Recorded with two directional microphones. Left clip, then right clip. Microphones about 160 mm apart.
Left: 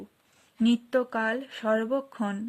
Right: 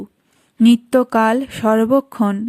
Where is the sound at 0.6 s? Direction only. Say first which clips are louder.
Right 11 dB; 35° right (ahead or behind).